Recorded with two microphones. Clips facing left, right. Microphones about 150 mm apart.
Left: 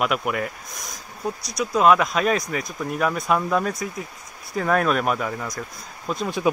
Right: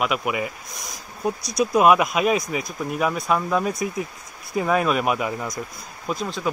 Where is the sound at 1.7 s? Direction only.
10° right (ahead or behind).